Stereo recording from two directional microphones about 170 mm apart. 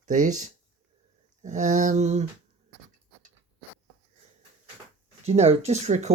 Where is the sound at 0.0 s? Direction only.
45° right (ahead or behind).